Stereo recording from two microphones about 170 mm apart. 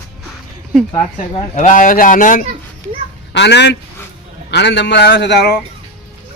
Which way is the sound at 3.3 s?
85° left.